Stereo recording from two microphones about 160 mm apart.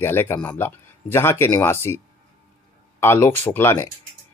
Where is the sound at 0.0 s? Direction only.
15° left (ahead or behind).